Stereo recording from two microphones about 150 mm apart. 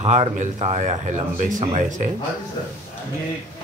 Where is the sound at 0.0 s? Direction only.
50° right (ahead or behind).